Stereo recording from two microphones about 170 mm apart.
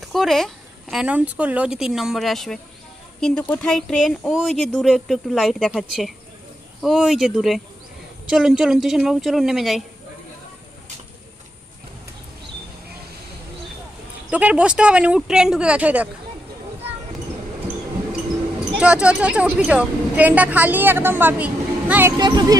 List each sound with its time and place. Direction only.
0.0 s speech: centre (ahead or behind)
14.3 s a woman's voice: 10° right (ahead or behind)
18.8 s a woman's voice: 5° right (ahead or behind)
22.2 s speech: 25° right (ahead or behind)